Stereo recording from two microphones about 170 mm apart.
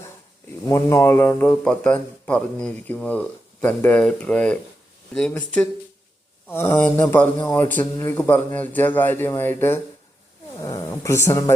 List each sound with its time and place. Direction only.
0.7 s a man's voice: 15° left (ahead or behind)
6.5 s a man's voice: 15° left (ahead or behind)